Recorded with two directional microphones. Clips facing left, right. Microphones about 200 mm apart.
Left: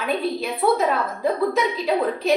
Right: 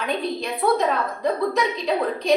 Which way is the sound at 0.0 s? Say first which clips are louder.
Left 2 dB; 5° left (ahead or behind).